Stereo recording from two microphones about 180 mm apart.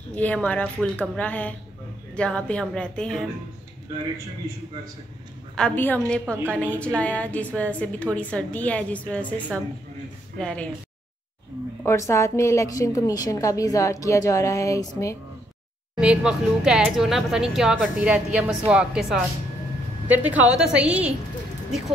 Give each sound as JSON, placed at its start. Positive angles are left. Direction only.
{"t": 0.1, "sound": "a woman's voice", "side_deg": 10}
{"t": 5.6, "sound": "a woman's voice", "side_deg": 10}
{"t": 11.8, "sound": "a woman's voice", "side_deg": 15}
{"t": 16.0, "sound": "a woman's voice", "side_deg": -5}